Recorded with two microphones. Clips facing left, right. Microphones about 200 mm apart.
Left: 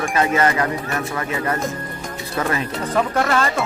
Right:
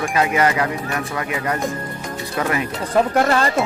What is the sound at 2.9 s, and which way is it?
Speech, 30° right (ahead or behind).